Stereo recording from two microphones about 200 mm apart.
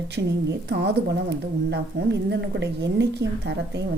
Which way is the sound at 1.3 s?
55° right (ahead or behind).